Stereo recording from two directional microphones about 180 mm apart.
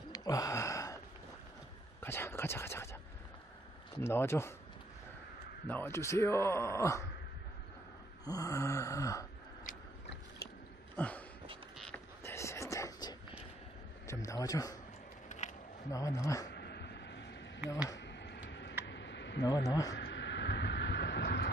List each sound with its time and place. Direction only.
0.1 s a sound: 20° left (ahead or behind)
2.0 s whispering: 15° left (ahead or behind)
4.0 s speech: 15° left (ahead or behind)
5.7 s speech: 10° left (ahead or behind)
8.3 s speech: 20° left (ahead or behind)
11.0 s a sound: 10° left (ahead or behind)
14.0 s speech: 15° left (ahead or behind)
15.2 s a sound: 40° left (ahead or behind)
15.9 s speech: 20° left (ahead or behind)
16.4 s a sound: 70° left (ahead or behind)
19.4 s speech: 20° left (ahead or behind)
20.0 s vehicle: 75° left (ahead or behind)